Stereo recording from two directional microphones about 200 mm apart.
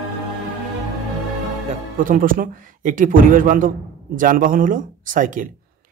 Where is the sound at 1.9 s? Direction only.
45° right (ahead or behind).